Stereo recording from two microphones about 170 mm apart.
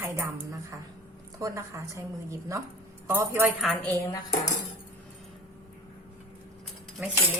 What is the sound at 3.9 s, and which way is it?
Cutlery, 15° left (ahead or behind).